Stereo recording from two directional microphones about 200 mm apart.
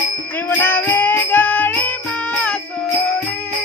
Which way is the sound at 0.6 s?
10° left (ahead or behind).